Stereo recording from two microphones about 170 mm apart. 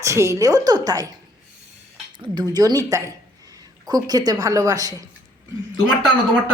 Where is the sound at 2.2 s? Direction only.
25° right (ahead or behind).